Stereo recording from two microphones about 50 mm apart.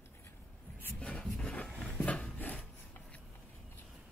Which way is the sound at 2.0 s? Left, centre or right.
Left.